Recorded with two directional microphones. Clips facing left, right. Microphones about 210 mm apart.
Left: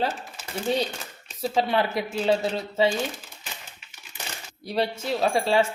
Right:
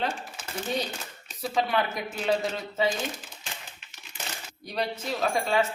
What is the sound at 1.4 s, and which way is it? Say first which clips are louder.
Speech: left 3 dB; 30° left (ahead or behind).